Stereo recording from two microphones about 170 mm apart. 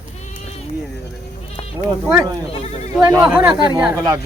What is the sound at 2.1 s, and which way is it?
Speech, 20° right (ahead or behind).